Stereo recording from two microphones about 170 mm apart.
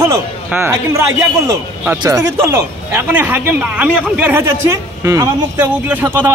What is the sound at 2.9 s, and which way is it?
A man's voice, 10° right (ahead or behind).